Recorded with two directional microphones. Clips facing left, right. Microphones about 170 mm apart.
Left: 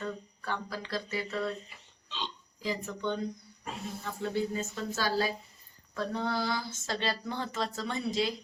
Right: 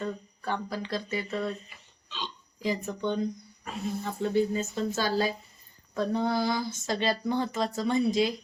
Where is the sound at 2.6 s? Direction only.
15° right (ahead or behind).